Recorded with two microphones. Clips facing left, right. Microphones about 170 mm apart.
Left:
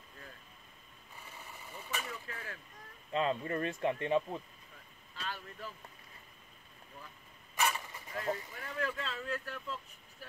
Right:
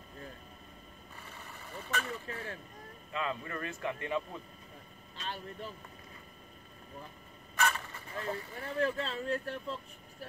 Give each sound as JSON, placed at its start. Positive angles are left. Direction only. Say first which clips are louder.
{"t": 1.3, "sound": "vehicle", "louder": "right 3 dB", "side_deg": 10}
{"t": 2.0, "sound": "a sound", "louder": "right 5 dB", "side_deg": -35}
{"t": 3.1, "sound": "speech", "louder": "left 4 dB", "side_deg": 30}
{"t": 5.1, "sound": "speech", "louder": "right 2 dB", "side_deg": -25}
{"t": 7.5, "sound": "vehicle", "louder": "right 1 dB", "side_deg": 15}
{"t": 8.1, "sound": "speech", "louder": "left 1 dB", "side_deg": -35}